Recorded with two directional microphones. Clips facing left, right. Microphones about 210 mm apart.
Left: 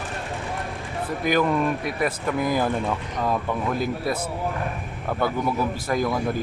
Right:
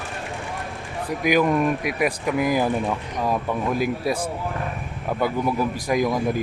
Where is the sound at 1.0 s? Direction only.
10° right (ahead or behind).